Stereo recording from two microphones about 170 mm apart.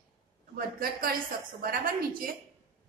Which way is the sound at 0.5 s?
60° right (ahead or behind).